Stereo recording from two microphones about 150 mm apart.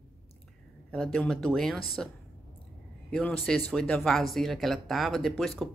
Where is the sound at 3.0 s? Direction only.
10° left (ahead or behind).